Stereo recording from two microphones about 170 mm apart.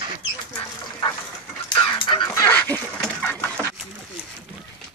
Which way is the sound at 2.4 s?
10° left (ahead or behind).